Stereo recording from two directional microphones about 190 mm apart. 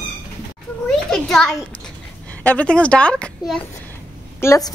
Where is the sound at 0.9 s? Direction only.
5° left (ahead or behind).